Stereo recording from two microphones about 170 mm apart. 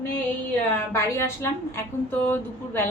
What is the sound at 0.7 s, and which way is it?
Speech, 15° left (ahead or behind).